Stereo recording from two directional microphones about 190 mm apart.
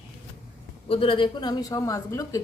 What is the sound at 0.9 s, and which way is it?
Speech, 30° left (ahead or behind).